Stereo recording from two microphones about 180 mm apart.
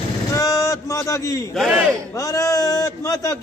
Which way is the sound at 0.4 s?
20° left (ahead or behind).